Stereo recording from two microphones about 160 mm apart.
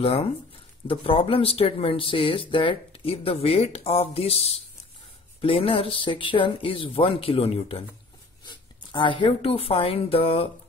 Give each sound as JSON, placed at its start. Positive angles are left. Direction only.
{"t": 0.0, "sound": "speech", "side_deg": 35}